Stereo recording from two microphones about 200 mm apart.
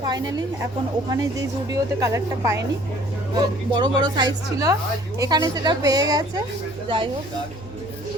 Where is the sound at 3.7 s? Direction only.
20° right (ahead or behind).